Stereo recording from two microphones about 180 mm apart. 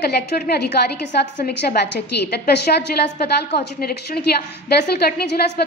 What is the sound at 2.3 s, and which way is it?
A woman's voice, 65° left (ahead or behind).